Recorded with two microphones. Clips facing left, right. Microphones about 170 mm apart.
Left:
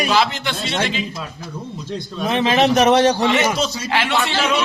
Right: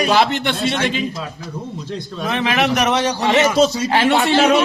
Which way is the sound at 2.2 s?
20° left (ahead or behind).